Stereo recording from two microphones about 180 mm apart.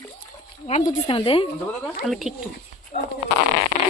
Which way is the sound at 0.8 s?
30° left (ahead or behind).